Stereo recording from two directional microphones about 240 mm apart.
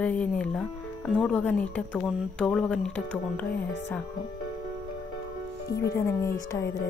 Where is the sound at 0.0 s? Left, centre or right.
Centre.